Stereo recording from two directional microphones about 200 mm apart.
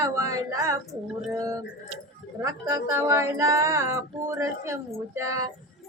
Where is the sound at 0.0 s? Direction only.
15° right (ahead or behind).